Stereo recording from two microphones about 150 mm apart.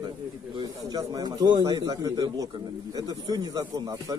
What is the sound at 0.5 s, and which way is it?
Speech, 25° right (ahead or behind).